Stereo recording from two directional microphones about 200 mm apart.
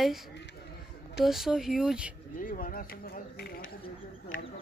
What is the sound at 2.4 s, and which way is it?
Speech, 45° left (ahead or behind).